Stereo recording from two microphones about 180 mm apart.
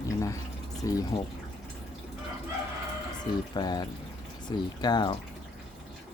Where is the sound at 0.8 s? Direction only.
20° left (ahead or behind).